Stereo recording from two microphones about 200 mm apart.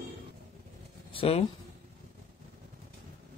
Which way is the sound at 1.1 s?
30° left (ahead or behind).